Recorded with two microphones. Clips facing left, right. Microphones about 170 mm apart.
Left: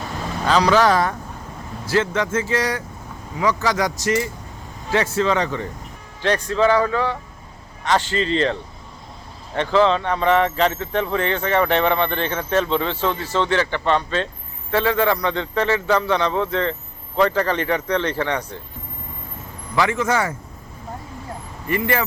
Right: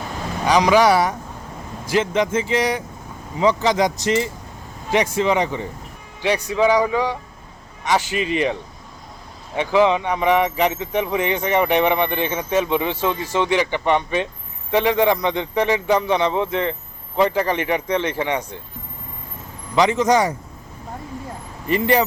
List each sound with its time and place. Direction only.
0.4 s speech: 15° right (ahead or behind)
9.6 s speech: 15° right (ahead or behind)
19.7 s speech: 20° right (ahead or behind)
21.7 s speech: 20° right (ahead or behind)